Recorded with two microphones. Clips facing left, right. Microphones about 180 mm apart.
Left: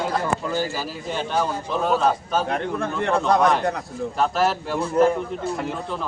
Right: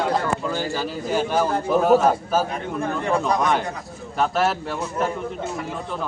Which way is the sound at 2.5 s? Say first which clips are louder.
Left 1 dB; 70° left (ahead or behind).